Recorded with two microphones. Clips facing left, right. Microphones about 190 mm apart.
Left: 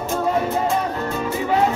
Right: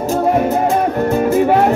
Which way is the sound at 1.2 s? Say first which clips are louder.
Right 7 dB; 60° right (ahead or behind).